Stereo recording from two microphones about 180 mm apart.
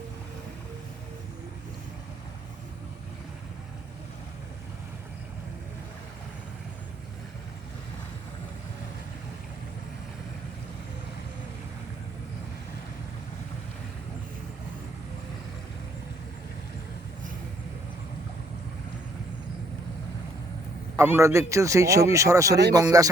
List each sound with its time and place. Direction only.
20.9 s speech: 15° right (ahead or behind)